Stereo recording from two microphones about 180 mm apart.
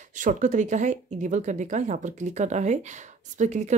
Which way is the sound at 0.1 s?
45° right (ahead or behind).